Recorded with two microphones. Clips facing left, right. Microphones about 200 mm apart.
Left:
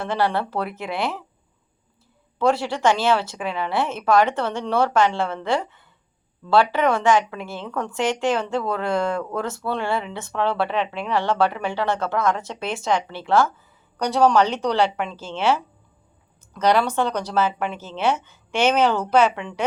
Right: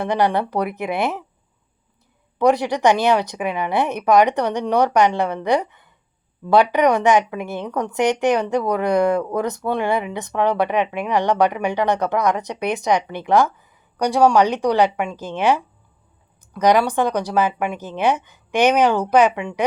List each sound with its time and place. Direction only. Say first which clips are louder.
0.0 s a woman's voice: right 4 dB; 15° right (ahead or behind)
2.4 s a woman's voice: right 4 dB; 15° right (ahead or behind)